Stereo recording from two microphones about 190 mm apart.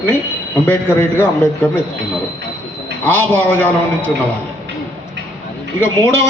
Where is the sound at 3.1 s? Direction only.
10° left (ahead or behind).